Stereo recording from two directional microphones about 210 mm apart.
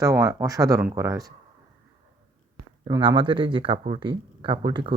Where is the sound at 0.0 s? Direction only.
15° right (ahead or behind).